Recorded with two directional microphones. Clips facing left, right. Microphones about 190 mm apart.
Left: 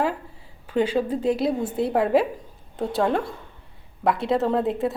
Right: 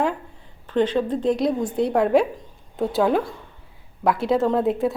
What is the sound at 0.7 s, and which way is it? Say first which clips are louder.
A woman's voice: right 1 dB; 10° left (ahead or behind).